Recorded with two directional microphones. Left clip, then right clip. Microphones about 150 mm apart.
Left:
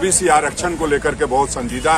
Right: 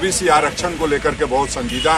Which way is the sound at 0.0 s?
15° left (ahead or behind).